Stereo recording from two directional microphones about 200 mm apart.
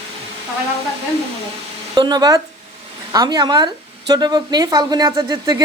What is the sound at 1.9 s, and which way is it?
Speech, 20° right (ahead or behind).